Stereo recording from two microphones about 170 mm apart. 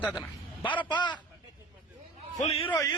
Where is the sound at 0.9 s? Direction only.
25° left (ahead or behind).